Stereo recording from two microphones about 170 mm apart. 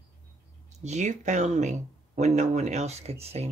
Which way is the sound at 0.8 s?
45° right (ahead or behind).